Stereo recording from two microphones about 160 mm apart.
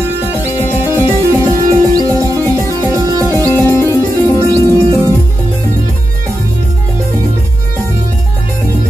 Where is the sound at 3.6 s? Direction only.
15° left (ahead or behind).